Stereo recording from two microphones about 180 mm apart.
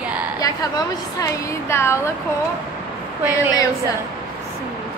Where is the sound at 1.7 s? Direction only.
15° left (ahead or behind).